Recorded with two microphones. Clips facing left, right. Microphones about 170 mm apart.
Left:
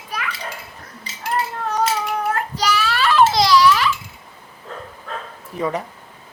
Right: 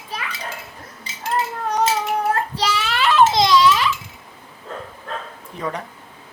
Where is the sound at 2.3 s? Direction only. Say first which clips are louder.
Left 1 dB; 30° right (ahead or behind).